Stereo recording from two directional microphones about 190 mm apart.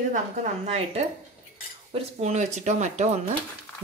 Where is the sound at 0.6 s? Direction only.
35° right (ahead or behind).